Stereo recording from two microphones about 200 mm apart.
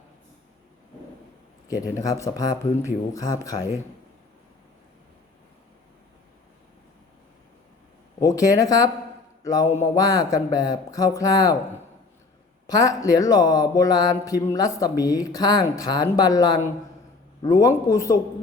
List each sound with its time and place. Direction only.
1.6 s speech: 15° left (ahead or behind)
8.2 s speech: 15° left (ahead or behind)
12.6 s speech: 15° left (ahead or behind)